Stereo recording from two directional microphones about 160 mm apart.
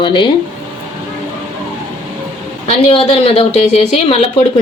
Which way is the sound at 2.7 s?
40° left (ahead or behind).